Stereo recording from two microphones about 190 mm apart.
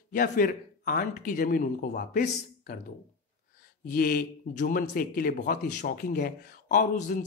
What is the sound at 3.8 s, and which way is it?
A man's voice, 50° left (ahead or behind).